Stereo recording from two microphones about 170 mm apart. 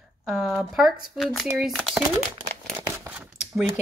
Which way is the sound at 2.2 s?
40° right (ahead or behind).